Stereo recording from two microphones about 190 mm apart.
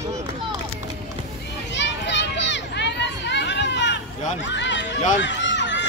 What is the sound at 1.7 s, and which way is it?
Children playing, 65° left (ahead or behind).